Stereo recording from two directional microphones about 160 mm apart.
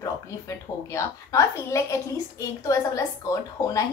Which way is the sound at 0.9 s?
20° left (ahead or behind).